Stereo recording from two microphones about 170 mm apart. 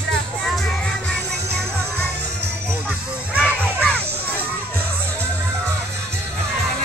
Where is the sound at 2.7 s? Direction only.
10° right (ahead or behind).